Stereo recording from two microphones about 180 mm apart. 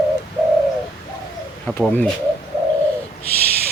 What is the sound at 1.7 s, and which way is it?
Speech, 10° left (ahead or behind).